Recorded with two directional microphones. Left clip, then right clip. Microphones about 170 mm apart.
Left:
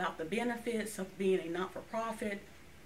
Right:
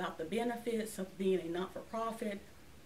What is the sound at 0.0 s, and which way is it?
Speech, 20° right (ahead or behind).